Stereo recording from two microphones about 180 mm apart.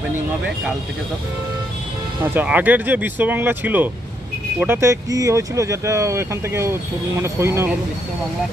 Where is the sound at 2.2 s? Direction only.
10° right (ahead or behind).